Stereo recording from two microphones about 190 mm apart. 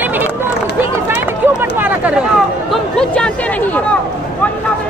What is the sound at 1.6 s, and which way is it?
Speech, 10° right (ahead or behind).